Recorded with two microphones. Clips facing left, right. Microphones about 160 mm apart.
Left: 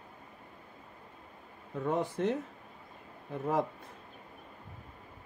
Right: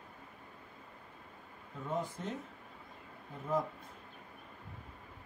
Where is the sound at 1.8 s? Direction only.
75° left (ahead or behind).